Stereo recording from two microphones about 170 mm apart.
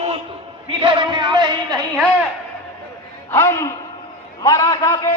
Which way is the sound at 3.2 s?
15° left (ahead or behind).